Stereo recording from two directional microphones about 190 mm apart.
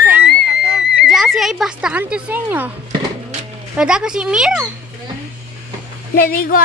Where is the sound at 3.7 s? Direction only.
5° right (ahead or behind).